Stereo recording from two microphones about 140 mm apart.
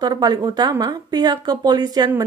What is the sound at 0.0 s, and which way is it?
Speech, 30° right (ahead or behind).